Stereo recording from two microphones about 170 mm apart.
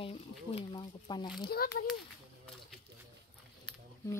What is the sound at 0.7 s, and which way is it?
Speech, 25° left (ahead or behind).